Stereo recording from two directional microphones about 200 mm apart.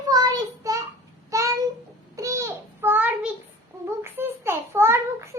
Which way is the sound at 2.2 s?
15° right (ahead or behind).